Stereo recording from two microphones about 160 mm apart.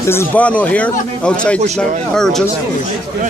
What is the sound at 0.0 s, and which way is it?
Speech, 15° left (ahead or behind).